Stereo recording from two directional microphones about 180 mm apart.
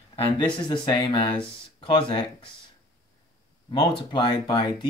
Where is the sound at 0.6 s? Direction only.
25° left (ahead or behind).